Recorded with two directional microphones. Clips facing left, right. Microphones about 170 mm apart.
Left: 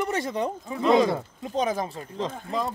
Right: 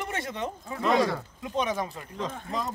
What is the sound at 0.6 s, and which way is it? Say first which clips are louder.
Speech: left 4 dB; 20° left (ahead or behind).